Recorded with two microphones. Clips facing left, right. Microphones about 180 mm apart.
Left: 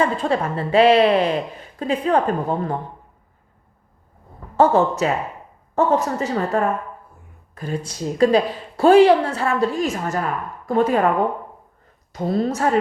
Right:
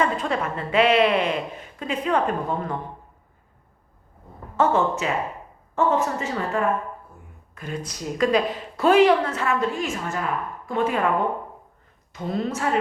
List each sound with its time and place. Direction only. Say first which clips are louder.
0.0 s a woman's voice: left 4 dB; 30° left (ahead or behind)
4.5 s a woman's voice: left 5 dB; 35° left (ahead or behind)
12.1 s a woman's voice: left 5 dB; 40° left (ahead or behind)